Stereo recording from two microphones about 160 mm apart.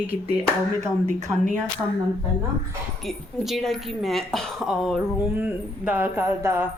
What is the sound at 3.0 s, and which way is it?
A woman's voice, centre (ahead or behind).